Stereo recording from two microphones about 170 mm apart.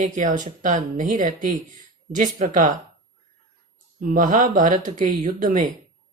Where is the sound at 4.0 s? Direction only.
50° right (ahead or behind).